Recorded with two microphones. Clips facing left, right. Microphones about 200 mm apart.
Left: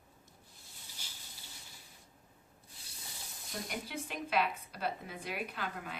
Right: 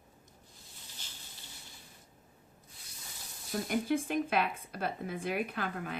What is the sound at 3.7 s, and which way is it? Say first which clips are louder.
Speech: right 13 dB; 50° right (ahead or behind).